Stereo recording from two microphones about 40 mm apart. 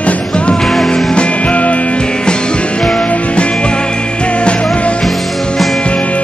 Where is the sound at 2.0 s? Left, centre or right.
Left.